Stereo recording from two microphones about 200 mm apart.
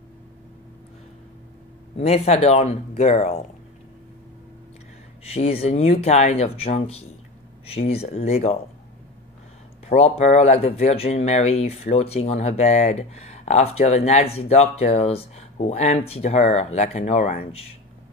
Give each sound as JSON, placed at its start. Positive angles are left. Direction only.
{"t": 2.0, "sound": "speech", "side_deg": 30}
{"t": 5.2, "sound": "speech", "side_deg": 30}
{"t": 9.8, "sound": "speech", "side_deg": 35}